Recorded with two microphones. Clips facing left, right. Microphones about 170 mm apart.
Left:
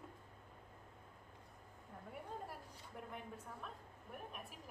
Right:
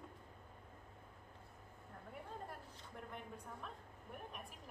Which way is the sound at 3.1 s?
Centre (ahead or behind).